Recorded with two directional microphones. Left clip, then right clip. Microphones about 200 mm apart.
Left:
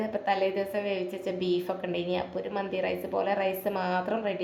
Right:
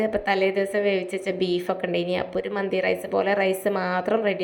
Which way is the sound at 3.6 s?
20° right (ahead or behind).